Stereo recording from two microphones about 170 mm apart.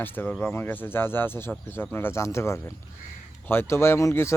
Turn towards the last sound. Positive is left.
turn(degrees=15)  # may be behind; listen again after turning